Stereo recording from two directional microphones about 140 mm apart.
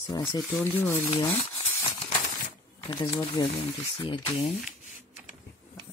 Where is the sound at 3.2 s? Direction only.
40° left (ahead or behind).